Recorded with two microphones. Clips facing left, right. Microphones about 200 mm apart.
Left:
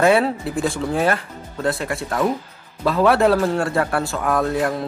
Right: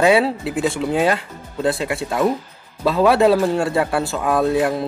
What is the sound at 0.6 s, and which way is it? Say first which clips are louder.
Speech: right 2 dB; 20° right (ahead or behind).